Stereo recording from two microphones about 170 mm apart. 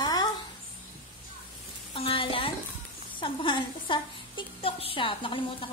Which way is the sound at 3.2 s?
30° left (ahead or behind).